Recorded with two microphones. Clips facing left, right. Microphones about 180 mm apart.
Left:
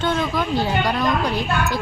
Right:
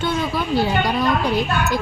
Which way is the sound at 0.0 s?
10° right (ahead or behind).